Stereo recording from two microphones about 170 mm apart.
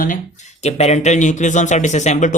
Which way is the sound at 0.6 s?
40° left (ahead or behind).